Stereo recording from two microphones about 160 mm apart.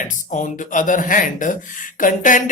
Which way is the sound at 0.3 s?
50° left (ahead or behind).